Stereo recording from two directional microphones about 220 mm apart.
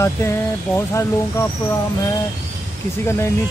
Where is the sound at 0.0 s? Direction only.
10° left (ahead or behind).